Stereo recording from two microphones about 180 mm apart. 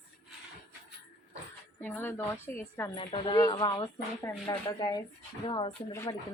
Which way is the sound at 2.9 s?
30° left (ahead or behind).